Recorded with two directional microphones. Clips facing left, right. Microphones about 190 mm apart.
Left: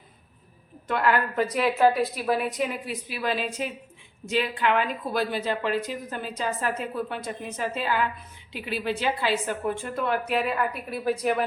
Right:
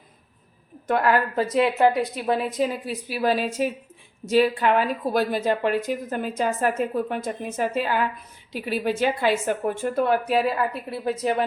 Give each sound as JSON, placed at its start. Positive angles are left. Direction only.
{"t": 0.9, "sound": "a woman's voice", "side_deg": -40}
{"t": 1.5, "sound": "a woman's voice", "side_deg": -25}